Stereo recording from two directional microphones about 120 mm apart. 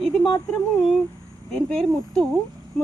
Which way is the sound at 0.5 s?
Centre (ahead or behind).